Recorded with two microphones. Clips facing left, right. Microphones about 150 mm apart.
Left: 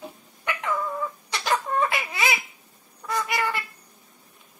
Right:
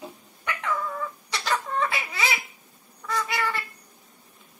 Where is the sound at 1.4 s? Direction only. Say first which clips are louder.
Left 3 dB; 20° left (ahead or behind).